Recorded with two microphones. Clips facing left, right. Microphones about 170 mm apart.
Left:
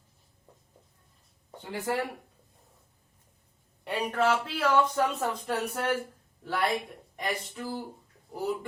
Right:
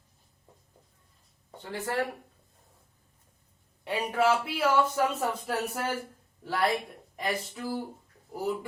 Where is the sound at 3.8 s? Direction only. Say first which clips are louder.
Right 1 dB; 5° right (ahead or behind).